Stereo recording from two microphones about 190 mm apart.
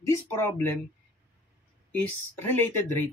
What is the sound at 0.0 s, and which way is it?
Speech, 15° left (ahead or behind).